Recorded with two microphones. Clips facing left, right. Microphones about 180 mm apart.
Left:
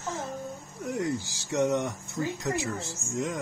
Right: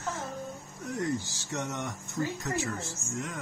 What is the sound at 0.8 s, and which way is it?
Speech, 10° left (ahead or behind).